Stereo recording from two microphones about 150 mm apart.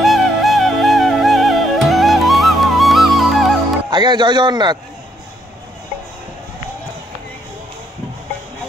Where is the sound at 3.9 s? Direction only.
30° right (ahead or behind).